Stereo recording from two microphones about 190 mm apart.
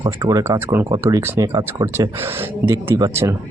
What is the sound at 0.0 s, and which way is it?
Speech, 20° right (ahead or behind).